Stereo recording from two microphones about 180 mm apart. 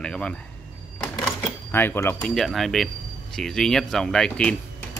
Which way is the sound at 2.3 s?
Centre (ahead or behind).